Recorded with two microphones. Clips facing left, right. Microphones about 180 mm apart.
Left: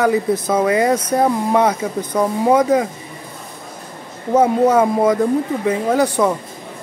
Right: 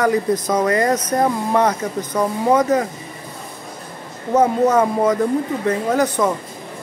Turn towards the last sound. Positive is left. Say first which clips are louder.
# left 2 dB
turn(degrees=10)  # may be behind; listen again after turning